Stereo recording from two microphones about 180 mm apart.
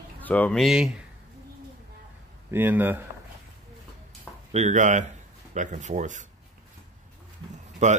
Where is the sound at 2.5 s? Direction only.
10° right (ahead or behind).